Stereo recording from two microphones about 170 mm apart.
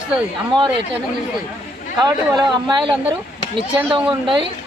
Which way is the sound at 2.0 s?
25° right (ahead or behind).